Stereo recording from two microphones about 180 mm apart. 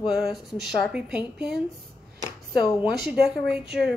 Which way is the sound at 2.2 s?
15° left (ahead or behind).